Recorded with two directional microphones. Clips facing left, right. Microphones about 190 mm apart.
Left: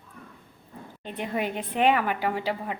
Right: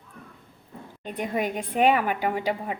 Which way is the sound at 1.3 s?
10° right (ahead or behind).